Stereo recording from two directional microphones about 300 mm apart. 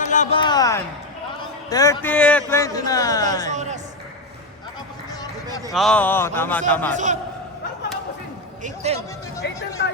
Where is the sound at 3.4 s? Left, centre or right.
Right.